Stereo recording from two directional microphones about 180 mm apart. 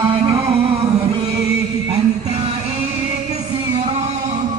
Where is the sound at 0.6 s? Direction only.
35° right (ahead or behind).